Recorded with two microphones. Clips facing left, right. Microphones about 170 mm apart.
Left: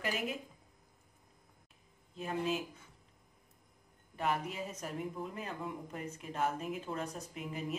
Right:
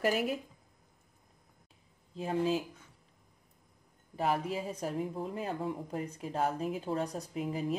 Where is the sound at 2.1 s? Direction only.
30° right (ahead or behind).